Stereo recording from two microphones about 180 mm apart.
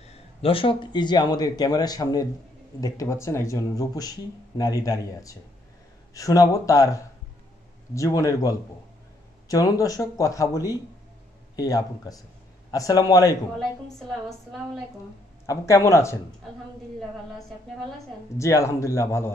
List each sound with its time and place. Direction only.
0.0 s speech: 35° left (ahead or behind)
13.6 s a woman's voice: centre (ahead or behind)
15.4 s speech: 15° left (ahead or behind)
18.4 s speech: 15° left (ahead or behind)